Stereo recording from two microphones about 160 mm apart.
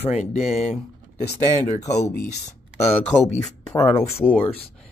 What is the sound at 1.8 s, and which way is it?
Speech, 45° left (ahead or behind).